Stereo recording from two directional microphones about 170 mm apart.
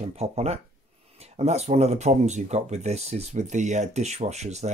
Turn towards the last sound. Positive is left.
turn(degrees=-40)  # may be behind; listen again after turning